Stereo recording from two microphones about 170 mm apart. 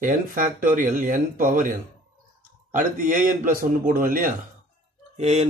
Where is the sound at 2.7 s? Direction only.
50° right (ahead or behind).